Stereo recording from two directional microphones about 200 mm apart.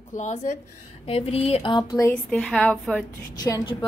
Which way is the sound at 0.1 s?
35° left (ahead or behind).